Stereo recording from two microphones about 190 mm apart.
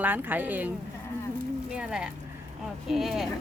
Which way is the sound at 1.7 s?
5° right (ahead or behind).